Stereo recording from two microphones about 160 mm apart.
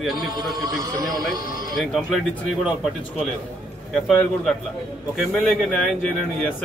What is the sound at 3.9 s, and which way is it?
Speech, centre (ahead or behind).